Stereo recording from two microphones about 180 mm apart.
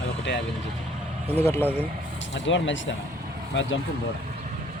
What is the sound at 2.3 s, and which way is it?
Speech, 90° left.